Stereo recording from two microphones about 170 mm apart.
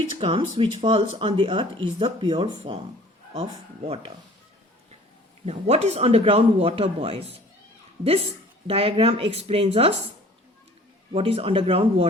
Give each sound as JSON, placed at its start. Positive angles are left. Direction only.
{"t": 0.2, "sound": "speech", "side_deg": -30}
{"t": 3.8, "sound": "speech", "side_deg": -35}
{"t": 5.5, "sound": "speech", "side_deg": -40}
{"t": 8.6, "sound": "speech", "side_deg": -30}
{"t": 11.1, "sound": "speech", "side_deg": -35}